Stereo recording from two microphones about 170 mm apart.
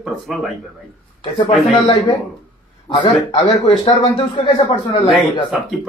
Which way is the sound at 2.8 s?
30° left (ahead or behind).